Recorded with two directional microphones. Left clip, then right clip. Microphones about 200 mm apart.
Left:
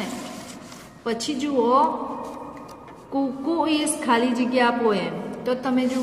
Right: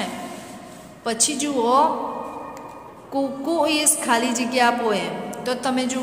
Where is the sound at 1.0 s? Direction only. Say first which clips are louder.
Right 3 dB; 15° left (ahead or behind).